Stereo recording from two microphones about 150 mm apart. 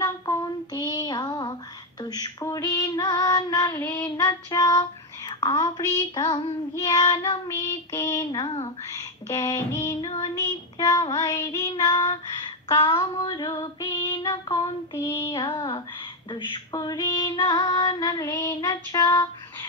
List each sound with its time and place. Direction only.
0.0 s child singing: 25° left (ahead or behind)
2.0 s female singing: 25° left (ahead or behind)
9.9 s child singing: 35° left (ahead or behind)
10.3 s female singing: 25° left (ahead or behind)
15.0 s female singing: 20° left (ahead or behind)